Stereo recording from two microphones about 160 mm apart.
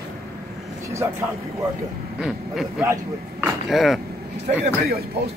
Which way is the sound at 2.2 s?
5° right (ahead or behind).